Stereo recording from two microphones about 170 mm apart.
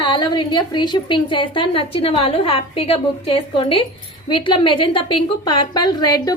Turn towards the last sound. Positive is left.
turn(degrees=25)  # may be behind; listen again after turning